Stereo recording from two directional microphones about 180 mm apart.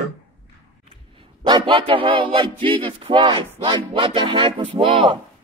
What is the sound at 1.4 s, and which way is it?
Music, 25° right (ahead or behind).